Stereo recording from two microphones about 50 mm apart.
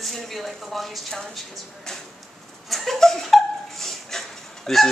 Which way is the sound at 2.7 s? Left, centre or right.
Centre.